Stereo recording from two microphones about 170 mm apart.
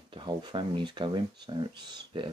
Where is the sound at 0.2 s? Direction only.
30° right (ahead or behind).